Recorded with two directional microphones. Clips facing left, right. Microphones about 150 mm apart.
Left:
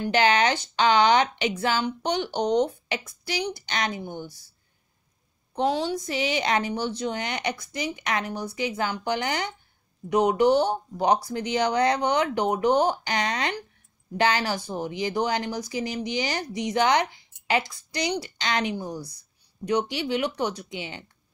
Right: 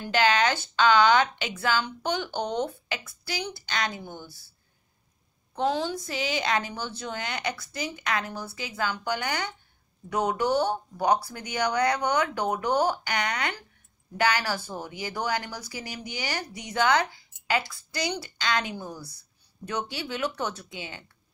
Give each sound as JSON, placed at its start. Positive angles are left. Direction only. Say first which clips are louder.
{"t": 0.0, "sound": "speech", "louder": "left 2 dB", "side_deg": 25}
{"t": 6.0, "sound": "speech", "louder": "left 3 dB", "side_deg": 25}